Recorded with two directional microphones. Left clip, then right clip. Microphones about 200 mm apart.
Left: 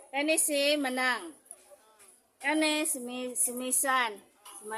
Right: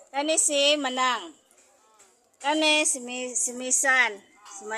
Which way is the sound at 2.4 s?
Centre (ahead or behind).